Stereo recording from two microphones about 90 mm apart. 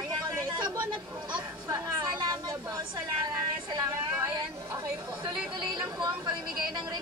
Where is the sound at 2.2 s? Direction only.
55° right (ahead or behind).